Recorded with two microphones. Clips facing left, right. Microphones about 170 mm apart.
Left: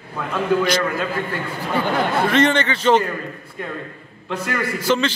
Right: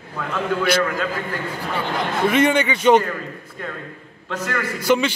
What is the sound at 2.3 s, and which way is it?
Speech, 10° right (ahead or behind).